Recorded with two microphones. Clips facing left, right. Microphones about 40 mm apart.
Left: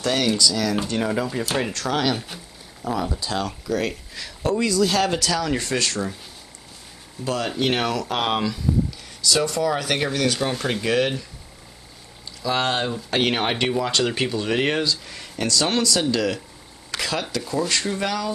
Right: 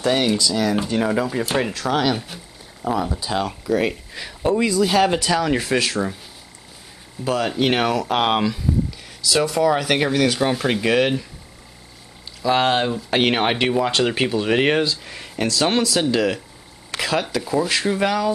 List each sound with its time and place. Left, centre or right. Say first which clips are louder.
0.0 s speech: right 2 dB; centre
7.2 s speech: right 3 dB; centre
12.4 s speech: right 5 dB; centre